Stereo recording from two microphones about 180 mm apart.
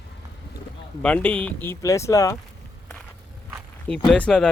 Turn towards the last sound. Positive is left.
turn(degrees=5)  # may be behind; listen again after turning